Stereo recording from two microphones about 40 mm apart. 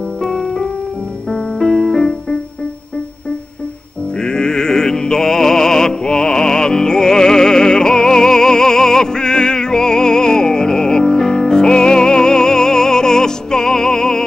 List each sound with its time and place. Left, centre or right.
0.2 s music: centre
4.2 s music: centre